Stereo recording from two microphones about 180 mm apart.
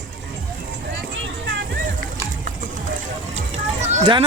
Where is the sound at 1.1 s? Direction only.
90° right.